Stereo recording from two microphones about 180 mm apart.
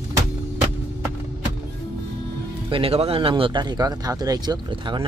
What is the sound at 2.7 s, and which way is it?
Speech, 30° right (ahead or behind).